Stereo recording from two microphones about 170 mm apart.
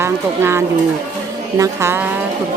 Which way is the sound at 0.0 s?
15° right (ahead or behind).